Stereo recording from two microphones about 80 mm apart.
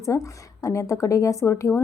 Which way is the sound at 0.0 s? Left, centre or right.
Left.